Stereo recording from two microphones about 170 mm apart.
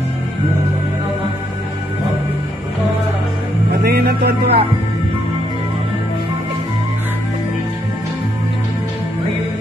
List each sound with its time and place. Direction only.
3.8 s music: 70° right (ahead or behind)